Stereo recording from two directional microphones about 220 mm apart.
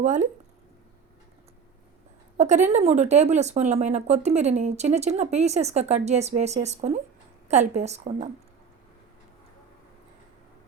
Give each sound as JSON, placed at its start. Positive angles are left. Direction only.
{"t": 0.0, "sound": "speech", "side_deg": -35}
{"t": 2.4, "sound": "a woman's voice", "side_deg": -30}